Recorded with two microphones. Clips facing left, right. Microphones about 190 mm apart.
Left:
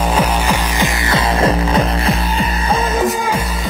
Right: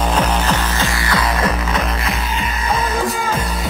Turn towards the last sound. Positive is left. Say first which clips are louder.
# left 3 dB
turn(degrees=30)  # may be behind; listen again after turning